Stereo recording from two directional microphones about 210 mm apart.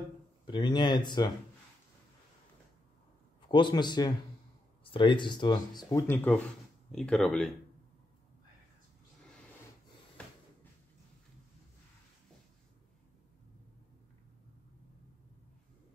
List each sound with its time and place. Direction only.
0.5 s speech: 20° left (ahead or behind)
3.4 s speech: 20° left (ahead or behind); by 7.5 s centre (ahead or behind)